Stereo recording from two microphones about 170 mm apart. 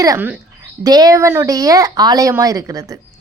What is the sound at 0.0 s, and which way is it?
Speech, 15° right (ahead or behind).